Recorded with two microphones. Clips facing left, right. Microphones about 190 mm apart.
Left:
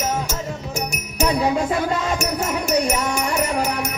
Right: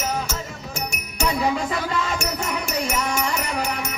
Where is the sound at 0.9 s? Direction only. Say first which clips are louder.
Left 3 dB; 40° left (ahead or behind).